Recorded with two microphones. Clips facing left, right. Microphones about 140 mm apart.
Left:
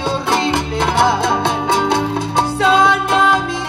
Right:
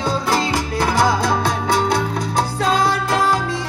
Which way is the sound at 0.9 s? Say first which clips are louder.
Left 3 dB; 60° left (ahead or behind).